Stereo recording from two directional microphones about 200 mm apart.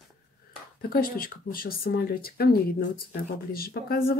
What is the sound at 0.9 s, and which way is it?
Speech, 45° left (ahead or behind).